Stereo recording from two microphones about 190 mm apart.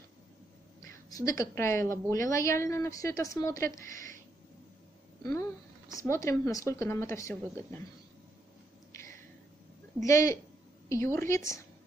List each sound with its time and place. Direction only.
0.8 s a woman's voice: 15° left (ahead or behind)
5.2 s a woman's voice: 15° left (ahead or behind)
10.0 s a woman's voice: 15° left (ahead or behind)